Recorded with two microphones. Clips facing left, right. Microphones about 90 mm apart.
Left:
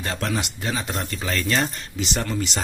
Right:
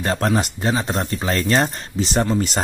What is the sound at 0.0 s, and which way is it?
Speech, 40° right (ahead or behind).